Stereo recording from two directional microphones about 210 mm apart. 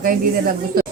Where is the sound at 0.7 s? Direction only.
45° right (ahead or behind).